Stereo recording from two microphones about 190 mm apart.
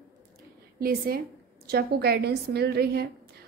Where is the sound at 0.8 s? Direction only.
50° right (ahead or behind).